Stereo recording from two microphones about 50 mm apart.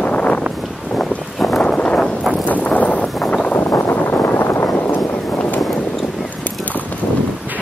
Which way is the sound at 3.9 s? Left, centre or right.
Left.